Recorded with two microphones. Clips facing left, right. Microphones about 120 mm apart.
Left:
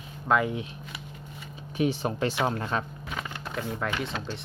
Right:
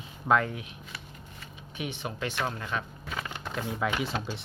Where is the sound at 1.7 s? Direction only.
35° left (ahead or behind).